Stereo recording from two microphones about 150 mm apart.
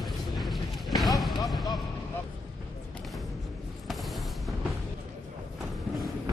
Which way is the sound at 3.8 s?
Centre (ahead or behind).